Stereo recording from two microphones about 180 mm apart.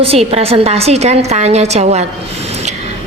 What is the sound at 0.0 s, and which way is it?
A woman's voice, 35° right (ahead or behind).